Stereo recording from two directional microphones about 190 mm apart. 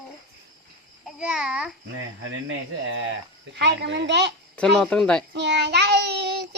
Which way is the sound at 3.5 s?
65° right (ahead or behind).